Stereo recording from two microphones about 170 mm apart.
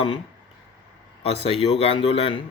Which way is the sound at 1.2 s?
35° left (ahead or behind).